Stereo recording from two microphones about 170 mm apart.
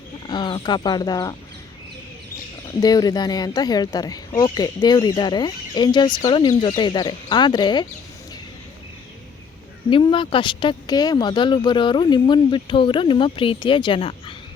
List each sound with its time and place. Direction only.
0.3 s speech: 25° left (ahead or behind)
2.8 s speech: 20° left (ahead or behind)
9.9 s speech: 30° left (ahead or behind)